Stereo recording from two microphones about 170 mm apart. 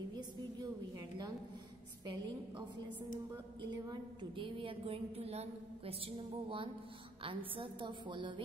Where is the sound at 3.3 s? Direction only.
25° right (ahead or behind).